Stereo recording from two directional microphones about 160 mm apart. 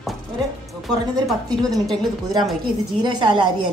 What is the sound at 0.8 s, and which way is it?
A woman's voice, centre (ahead or behind).